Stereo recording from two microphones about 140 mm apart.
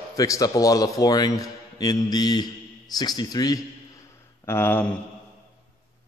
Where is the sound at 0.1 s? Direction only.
25° left (ahead or behind).